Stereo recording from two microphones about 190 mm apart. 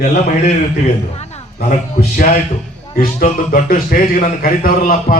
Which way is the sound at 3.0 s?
50° left (ahead or behind).